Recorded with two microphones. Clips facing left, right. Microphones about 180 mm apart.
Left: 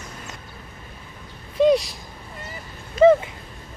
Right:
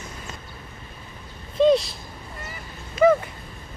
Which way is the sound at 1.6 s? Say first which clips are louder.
Even; 15° left (ahead or behind).